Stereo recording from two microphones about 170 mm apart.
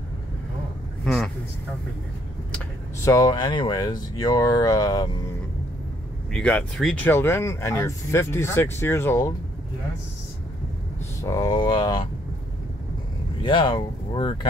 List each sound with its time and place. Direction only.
1.0 s vehicle: centre (ahead or behind)
3.1 s speech: 20° left (ahead or behind)
6.3 s speech: 5° left (ahead or behind)
11.1 s speech: 15° left (ahead or behind)
13.4 s speech: 30° left (ahead or behind)